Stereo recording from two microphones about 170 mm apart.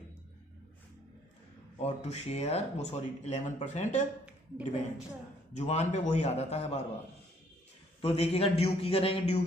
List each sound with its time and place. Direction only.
1.8 s speech: 40° left (ahead or behind)
5.5 s speech: 40° left (ahead or behind)
8.0 s speech: 35° left (ahead or behind)